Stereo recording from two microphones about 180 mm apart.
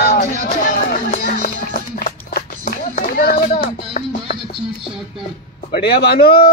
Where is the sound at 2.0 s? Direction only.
55° left (ahead or behind).